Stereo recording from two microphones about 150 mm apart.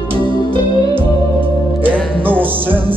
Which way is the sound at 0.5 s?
35° right (ahead or behind).